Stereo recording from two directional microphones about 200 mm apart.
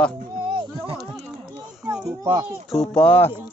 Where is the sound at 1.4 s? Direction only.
5° right (ahead or behind).